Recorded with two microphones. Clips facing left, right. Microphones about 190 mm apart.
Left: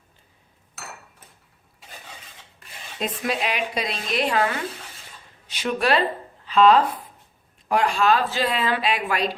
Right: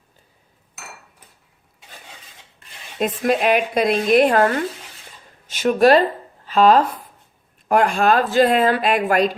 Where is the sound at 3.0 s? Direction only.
50° right (ahead or behind).